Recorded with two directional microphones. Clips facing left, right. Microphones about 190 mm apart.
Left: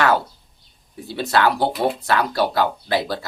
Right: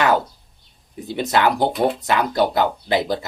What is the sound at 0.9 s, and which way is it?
Speech, 20° right (ahead or behind).